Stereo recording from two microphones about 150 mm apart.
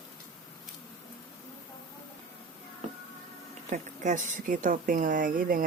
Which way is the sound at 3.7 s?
55° right (ahead or behind).